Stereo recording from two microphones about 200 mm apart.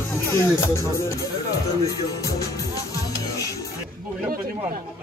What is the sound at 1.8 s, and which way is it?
Speech, 15° left (ahead or behind).